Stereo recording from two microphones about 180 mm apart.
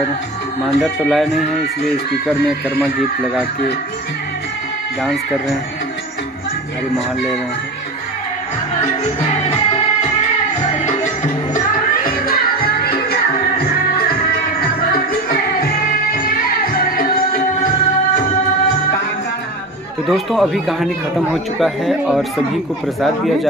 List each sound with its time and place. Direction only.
0.7 s speech: centre (ahead or behind)
11.5 s music: 50° left (ahead or behind)
15.2 s music: 55° left (ahead or behind)
20.1 s speech: centre (ahead or behind)